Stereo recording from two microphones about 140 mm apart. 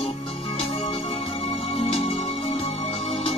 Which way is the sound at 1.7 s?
45° left (ahead or behind).